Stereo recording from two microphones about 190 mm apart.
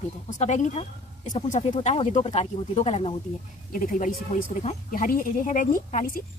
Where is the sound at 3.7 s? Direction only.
45° left (ahead or behind).